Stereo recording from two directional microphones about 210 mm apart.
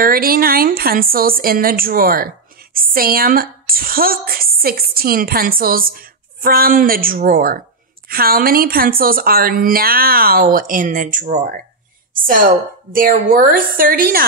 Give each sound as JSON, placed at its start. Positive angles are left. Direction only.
{"t": 0.0, "sound": "a woman's voice", "side_deg": -45}